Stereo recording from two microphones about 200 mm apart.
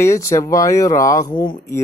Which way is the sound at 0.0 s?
15° left (ahead or behind).